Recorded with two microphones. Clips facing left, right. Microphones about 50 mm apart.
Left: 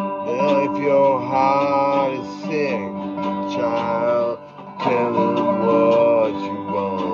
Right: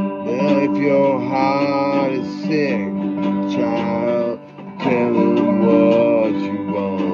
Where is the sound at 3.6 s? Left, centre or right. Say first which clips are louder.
Left 2 dB; right.